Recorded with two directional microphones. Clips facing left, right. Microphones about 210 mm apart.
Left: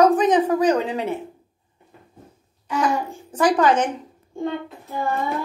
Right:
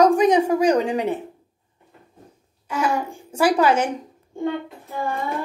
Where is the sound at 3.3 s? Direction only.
10° right (ahead or behind).